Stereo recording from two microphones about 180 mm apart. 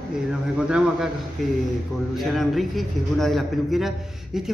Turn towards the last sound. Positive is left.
turn(degrees=0)  # may be behind; listen again after turning